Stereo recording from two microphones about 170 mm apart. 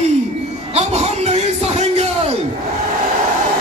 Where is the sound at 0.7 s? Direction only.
40° right (ahead or behind).